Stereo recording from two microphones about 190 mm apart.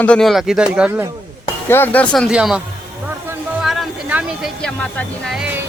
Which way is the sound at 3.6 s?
Centre (ahead or behind).